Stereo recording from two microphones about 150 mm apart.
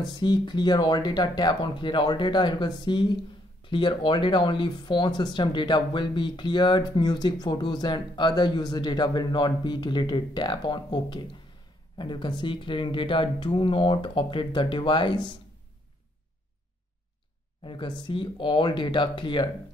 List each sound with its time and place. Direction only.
0.0 s speech: 30° left (ahead or behind)
17.6 s speech: 35° left (ahead or behind)